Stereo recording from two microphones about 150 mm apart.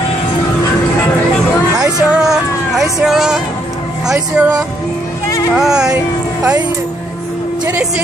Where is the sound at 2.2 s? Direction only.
5° right (ahead or behind).